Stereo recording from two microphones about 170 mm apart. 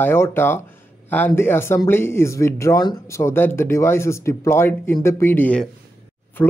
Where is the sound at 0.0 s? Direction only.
15° left (ahead or behind).